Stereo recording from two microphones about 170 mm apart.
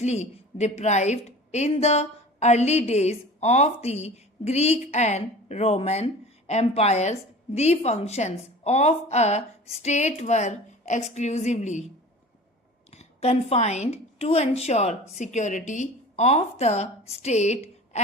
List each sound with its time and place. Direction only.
0.0 s a woman's voice: 40° left (ahead or behind)
12.9 s a woman's voice: 40° left (ahead or behind)